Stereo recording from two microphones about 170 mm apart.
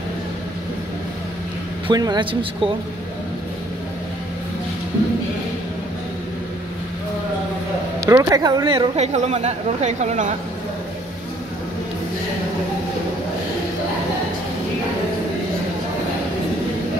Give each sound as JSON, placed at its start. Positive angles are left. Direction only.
{"t": 1.9, "sound": "speech", "side_deg": -25}
{"t": 8.0, "sound": "speech", "side_deg": -20}
{"t": 9.0, "sound": "a woman's voice", "side_deg": -40}